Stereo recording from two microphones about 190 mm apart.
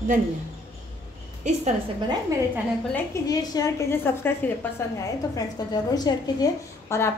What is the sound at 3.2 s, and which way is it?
A woman's voice, 20° left (ahead or behind).